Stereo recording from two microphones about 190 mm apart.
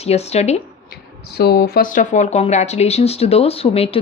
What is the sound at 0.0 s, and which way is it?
Speech, 35° left (ahead or behind).